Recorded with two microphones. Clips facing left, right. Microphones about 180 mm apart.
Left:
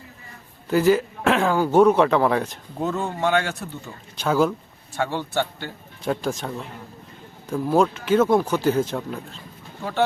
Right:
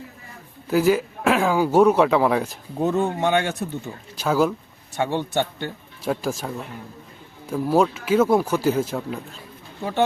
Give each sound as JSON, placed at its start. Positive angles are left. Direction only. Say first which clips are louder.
{"t": 0.7, "sound": "speech", "louder": "left 1 dB", "side_deg": -5}
{"t": 2.8, "sound": "speech", "louder": "right 3 dB", "side_deg": -20}
{"t": 4.2, "sound": "speech", "louder": "even", "side_deg": -5}
{"t": 4.9, "sound": "speech", "louder": "right 2 dB", "side_deg": -20}
{"t": 6.1, "sound": "speech", "louder": "even", "side_deg": -5}
{"t": 7.5, "sound": "speech", "louder": "even", "side_deg": -5}